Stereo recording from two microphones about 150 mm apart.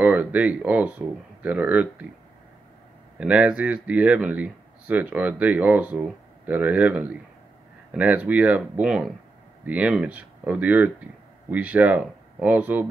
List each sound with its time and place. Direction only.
0.0 s speech: 10° right (ahead or behind)
3.2 s speech: 5° right (ahead or behind)